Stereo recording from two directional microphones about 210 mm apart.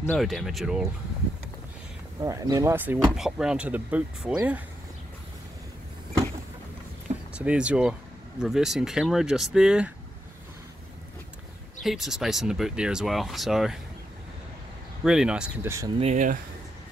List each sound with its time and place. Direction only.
0.0 s speech: 5° left (ahead or behind)
2.1 s speech: 15° right (ahead or behind)
7.3 s speech: 5° right (ahead or behind)
11.8 s speech: centre (ahead or behind)
15.0 s speech: 5° right (ahead or behind)
16.0 s speech: 35° right (ahead or behind)